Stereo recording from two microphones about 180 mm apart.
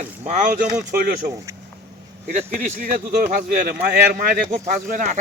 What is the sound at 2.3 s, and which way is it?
Speech, 40° right (ahead or behind).